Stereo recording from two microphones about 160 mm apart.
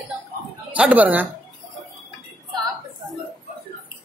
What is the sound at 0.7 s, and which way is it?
Speech, 10° right (ahead or behind).